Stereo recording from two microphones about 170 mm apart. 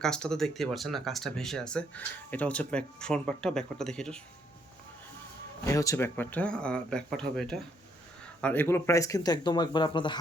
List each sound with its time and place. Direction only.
0.0 s speech: 5° left (ahead or behind)
5.6 s speech: 20° left (ahead or behind)